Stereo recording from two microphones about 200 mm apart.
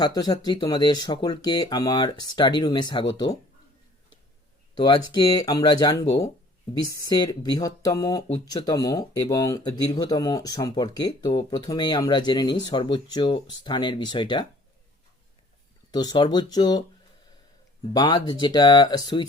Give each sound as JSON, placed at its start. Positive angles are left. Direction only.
{"t": 0.0, "sound": "speech", "side_deg": 20}
{"t": 4.8, "sound": "speech", "side_deg": 20}
{"t": 7.1, "sound": "speech", "side_deg": 20}
{"t": 15.9, "sound": "speech", "side_deg": 20}
{"t": 17.9, "sound": "speech", "side_deg": 20}